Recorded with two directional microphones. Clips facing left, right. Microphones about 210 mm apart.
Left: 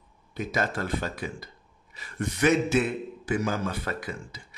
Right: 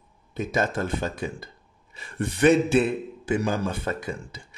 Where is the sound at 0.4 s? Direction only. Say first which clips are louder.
Right 3 dB; 25° right (ahead or behind).